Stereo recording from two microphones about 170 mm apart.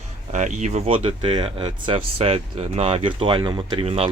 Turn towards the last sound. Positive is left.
turn(degrees=-35)  # may be behind; listen again after turning